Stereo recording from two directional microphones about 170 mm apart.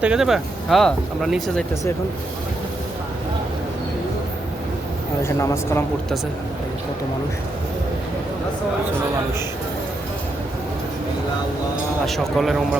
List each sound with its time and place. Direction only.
0.0 s speech: 5° right (ahead or behind)
5.2 s speech: 15° left (ahead or behind)
12.0 s speech: centre (ahead or behind)